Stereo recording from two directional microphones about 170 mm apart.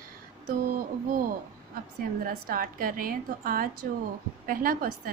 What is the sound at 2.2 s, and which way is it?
A woman's voice, 60° right (ahead or behind).